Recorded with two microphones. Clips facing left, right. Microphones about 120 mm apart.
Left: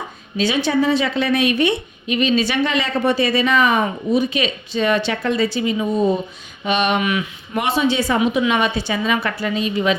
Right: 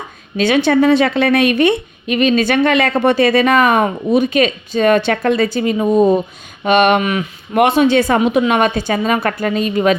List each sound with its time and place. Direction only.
0.3 s a woman's voice: 60° right (ahead or behind)
7.0 s speech: 40° right (ahead or behind)
7.5 s a woman's voice: 55° right (ahead or behind)